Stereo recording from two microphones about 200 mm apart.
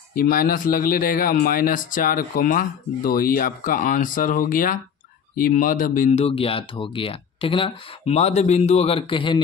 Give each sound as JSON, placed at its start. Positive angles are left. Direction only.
{"t": 0.1, "sound": "speech", "side_deg": 45}